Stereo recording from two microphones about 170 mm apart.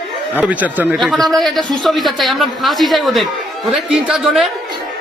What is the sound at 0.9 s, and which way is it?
A man's voice, centre (ahead or behind).